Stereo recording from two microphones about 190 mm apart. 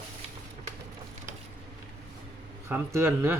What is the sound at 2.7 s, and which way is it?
Speech, 15° right (ahead or behind).